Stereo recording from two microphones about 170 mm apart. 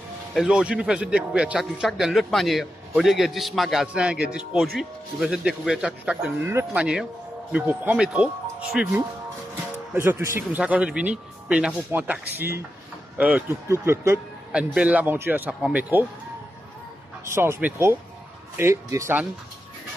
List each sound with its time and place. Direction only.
0.3 s speech: 5° right (ahead or behind)
13.7 s speech: 15° right (ahead or behind)
17.3 s speech: 15° right (ahead or behind)